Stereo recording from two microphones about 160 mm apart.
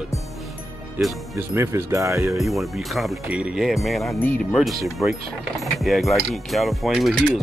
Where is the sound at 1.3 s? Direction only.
15° right (ahead or behind).